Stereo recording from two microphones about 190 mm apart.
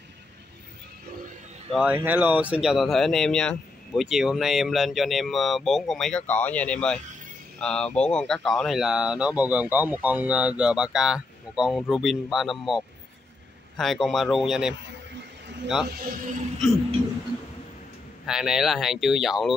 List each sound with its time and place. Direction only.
1.7 s speech: 5° right (ahead or behind)
15.9 s speech: 50° right (ahead or behind)
18.2 s speech: 5° right (ahead or behind)